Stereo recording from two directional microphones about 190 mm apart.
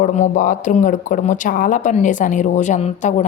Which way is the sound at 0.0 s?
45° left (ahead or behind).